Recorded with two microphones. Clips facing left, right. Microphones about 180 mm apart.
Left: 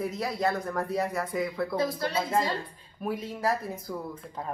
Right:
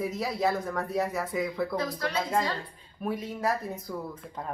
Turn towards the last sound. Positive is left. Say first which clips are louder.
# even
turn(degrees=0)  # may be behind; listen again after turning